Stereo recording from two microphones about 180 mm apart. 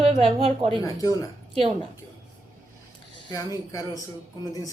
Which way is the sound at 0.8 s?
20° left (ahead or behind).